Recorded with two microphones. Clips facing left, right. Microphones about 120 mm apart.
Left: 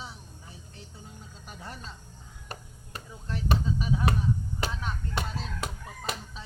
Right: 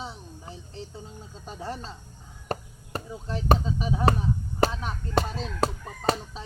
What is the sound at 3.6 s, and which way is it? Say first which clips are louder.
Speech: right 4 dB; 30° right (ahead or behind).